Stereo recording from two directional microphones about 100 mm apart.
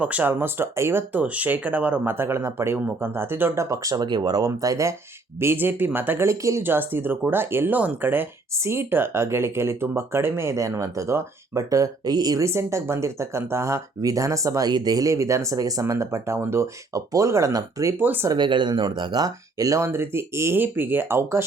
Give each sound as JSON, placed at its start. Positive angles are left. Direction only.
{"t": 0.0, "sound": "speech", "side_deg": -15}
{"t": 12.5, "sound": "speech", "side_deg": -25}
{"t": 18.0, "sound": "speech", "side_deg": -20}
{"t": 18.3, "sound": "speech", "side_deg": -50}